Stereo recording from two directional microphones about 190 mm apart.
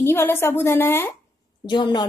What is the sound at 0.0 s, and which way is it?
A woman's voice, 10° left (ahead or behind).